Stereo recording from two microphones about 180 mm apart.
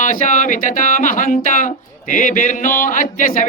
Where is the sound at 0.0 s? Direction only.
45° left (ahead or behind).